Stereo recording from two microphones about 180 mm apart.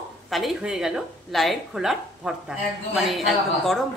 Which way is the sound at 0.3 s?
Centre (ahead or behind).